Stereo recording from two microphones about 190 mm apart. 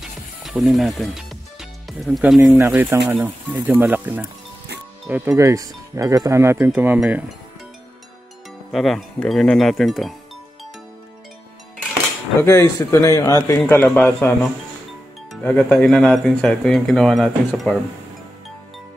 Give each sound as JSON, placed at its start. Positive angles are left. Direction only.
{"t": 0.0, "sound": "music", "side_deg": 0}
{"t": 2.6, "sound": "speech", "side_deg": -10}
{"t": 8.7, "sound": "speech", "side_deg": 0}
{"t": 12.4, "sound": "speech", "side_deg": 15}